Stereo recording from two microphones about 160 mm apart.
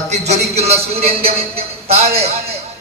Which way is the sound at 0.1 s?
45° right (ahead or behind).